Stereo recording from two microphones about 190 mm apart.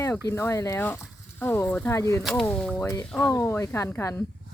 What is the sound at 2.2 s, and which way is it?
Speech, 5° left (ahead or behind).